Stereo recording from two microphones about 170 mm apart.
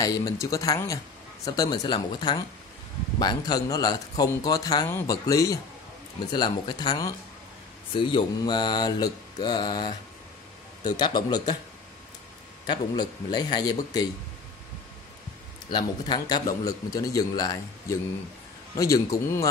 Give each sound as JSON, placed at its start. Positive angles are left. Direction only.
{"t": 0.0, "sound": "a man's voice", "side_deg": 20}
{"t": 12.6, "sound": "a man's voice", "side_deg": 25}
{"t": 15.7, "sound": "a man's voice", "side_deg": 25}